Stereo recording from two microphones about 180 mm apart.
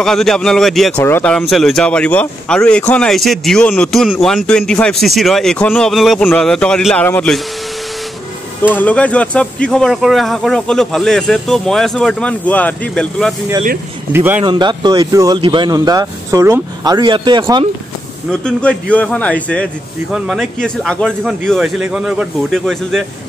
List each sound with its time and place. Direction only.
0.0 s speech: centre (ahead or behind)
8.7 s speech: 10° left (ahead or behind)
14.1 s speech: 10° right (ahead or behind)
14.4 s speech: 25° right (ahead or behind)
18.3 s speech: 5° left (ahead or behind)